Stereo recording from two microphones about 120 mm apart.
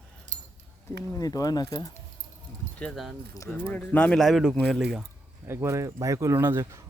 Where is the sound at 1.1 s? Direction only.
30° left (ahead or behind).